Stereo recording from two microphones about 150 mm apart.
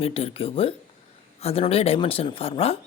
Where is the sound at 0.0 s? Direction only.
40° left (ahead or behind).